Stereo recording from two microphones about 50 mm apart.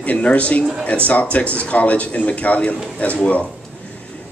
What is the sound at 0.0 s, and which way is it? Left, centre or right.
Speech, left.